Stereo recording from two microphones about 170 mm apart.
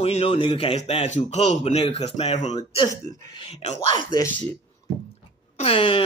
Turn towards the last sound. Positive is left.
turn(degrees=30)  # may be behind; listen again after turning